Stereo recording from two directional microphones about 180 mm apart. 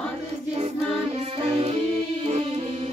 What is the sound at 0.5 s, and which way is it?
Music, 35° right (ahead or behind).